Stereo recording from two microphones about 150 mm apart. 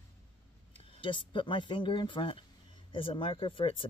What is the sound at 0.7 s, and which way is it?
Speech, 35° left (ahead or behind).